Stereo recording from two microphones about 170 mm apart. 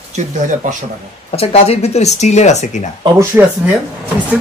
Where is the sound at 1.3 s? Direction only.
35° left (ahead or behind).